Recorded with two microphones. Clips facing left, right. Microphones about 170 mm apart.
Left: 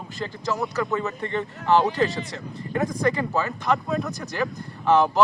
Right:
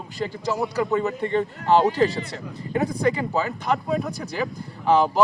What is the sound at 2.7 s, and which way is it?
Speech, 15° right (ahead or behind).